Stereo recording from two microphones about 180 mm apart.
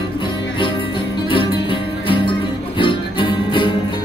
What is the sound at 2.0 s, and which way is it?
Music, 30° left (ahead or behind).